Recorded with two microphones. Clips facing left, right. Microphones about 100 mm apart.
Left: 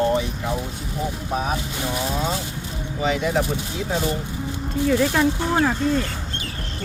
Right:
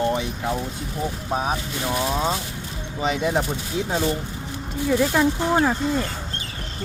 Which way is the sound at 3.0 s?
25° right (ahead or behind).